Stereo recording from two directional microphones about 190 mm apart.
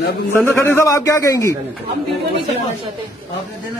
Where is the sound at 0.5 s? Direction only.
15° left (ahead or behind).